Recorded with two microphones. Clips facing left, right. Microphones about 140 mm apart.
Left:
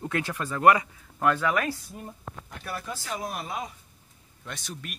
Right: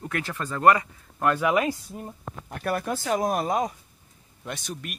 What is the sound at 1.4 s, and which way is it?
Speech, 20° right (ahead or behind).